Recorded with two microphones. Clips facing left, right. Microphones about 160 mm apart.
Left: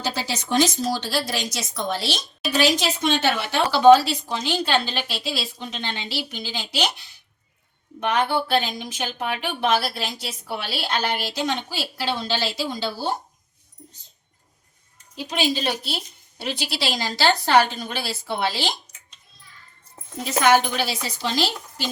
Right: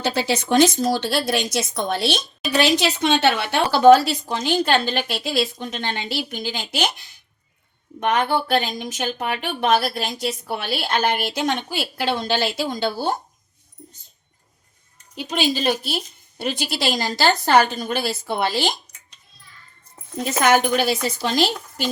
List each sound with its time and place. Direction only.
0.0 s a woman's voice: 60° right (ahead or behind)
3.7 s a woman's voice: 45° right (ahead or behind)
16.4 s a woman's voice: 50° right (ahead or behind)
20.7 s a woman's voice: 50° right (ahead or behind)